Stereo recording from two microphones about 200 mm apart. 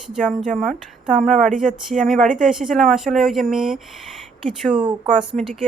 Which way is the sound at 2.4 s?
5° right (ahead or behind).